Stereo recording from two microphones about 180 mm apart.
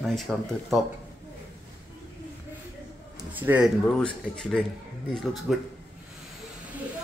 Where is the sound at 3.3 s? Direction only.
10° right (ahead or behind).